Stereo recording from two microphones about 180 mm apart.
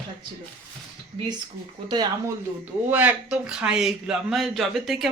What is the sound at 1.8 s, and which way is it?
Speech, 25° right (ahead or behind).